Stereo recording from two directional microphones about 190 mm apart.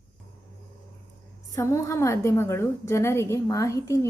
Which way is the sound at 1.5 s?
15° left (ahead or behind).